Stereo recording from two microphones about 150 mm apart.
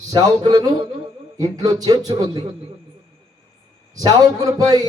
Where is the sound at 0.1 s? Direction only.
25° right (ahead or behind).